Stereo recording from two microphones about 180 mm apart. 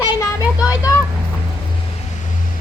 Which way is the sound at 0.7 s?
20° left (ahead or behind).